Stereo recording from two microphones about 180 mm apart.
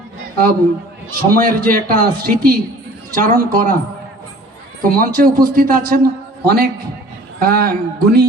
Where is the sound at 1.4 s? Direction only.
50° right (ahead or behind).